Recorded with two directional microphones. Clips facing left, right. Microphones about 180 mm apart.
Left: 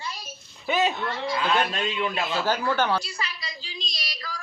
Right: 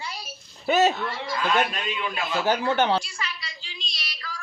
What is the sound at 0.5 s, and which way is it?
Speech, 45° right (ahead or behind).